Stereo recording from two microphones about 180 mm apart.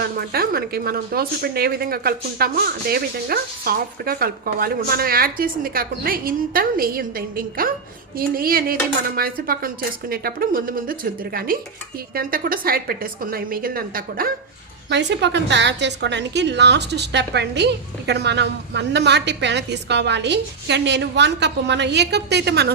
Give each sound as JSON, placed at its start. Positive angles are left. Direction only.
{"t": 0.0, "sound": "speech", "side_deg": -60}
{"t": 15.1, "sound": "a woman's voice", "side_deg": -75}